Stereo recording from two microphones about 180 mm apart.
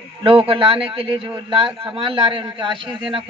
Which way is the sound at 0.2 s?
30° right (ahead or behind).